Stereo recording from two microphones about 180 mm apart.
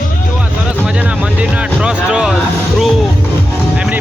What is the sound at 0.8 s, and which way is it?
Music, 5° right (ahead or behind).